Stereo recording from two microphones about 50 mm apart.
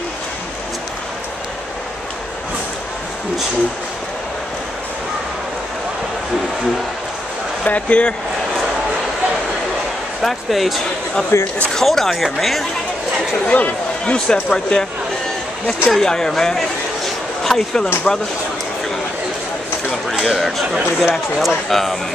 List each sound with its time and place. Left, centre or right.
7.6 s speech: left
10.2 s speech: centre
11.3 s speech: left
11.7 s speech: centre
13.5 s speech: left
14.1 s speech: centre
15.9 s a sound: centre
18.1 s speech: centre
19.9 s speech: centre